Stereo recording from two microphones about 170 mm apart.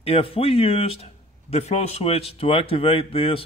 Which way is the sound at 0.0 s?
35° left (ahead or behind).